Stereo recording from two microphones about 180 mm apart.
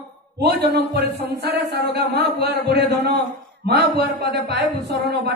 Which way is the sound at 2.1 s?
65° right (ahead or behind).